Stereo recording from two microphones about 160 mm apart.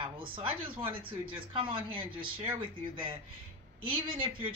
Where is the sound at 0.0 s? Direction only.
35° right (ahead or behind).